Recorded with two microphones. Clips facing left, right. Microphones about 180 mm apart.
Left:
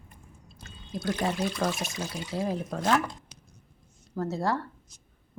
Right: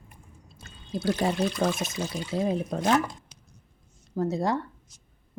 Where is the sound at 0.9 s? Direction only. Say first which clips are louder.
Right 4 dB; 30° right (ahead or behind).